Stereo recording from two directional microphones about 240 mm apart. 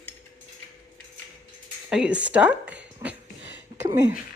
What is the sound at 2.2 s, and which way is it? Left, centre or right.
Speech, centre.